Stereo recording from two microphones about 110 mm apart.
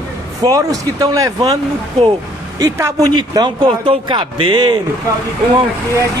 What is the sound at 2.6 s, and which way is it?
Speech, 30° right (ahead or behind).